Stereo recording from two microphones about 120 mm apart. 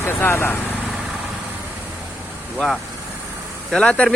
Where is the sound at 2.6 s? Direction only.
Centre (ahead or behind).